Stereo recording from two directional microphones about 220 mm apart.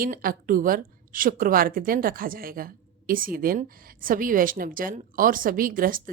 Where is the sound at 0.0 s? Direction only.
40° right (ahead or behind).